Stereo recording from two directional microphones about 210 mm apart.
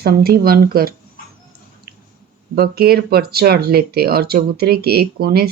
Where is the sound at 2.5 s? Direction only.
50° right (ahead or behind).